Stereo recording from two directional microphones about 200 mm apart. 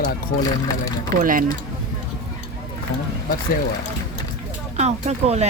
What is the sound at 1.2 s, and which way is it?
Speech, 45° right (ahead or behind).